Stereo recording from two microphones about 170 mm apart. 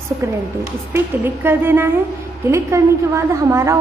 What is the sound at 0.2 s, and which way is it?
A woman's voice, 15° right (ahead or behind).